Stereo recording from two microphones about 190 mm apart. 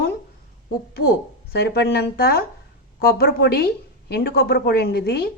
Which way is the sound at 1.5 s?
60° left (ahead or behind).